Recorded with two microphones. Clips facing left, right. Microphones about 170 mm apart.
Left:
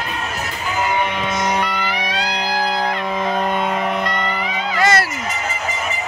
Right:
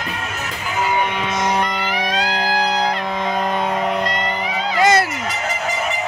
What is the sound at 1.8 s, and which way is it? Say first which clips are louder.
Music: right 2 dB; 45° right (ahead or behind).